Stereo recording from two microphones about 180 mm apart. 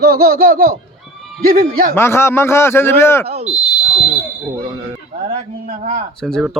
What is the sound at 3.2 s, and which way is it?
Speech, 35° right (ahead or behind).